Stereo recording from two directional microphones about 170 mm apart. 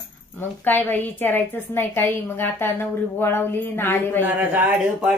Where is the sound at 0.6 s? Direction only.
10° left (ahead or behind).